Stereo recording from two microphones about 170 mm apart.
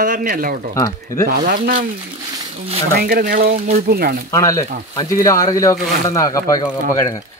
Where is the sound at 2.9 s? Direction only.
65° right (ahead or behind).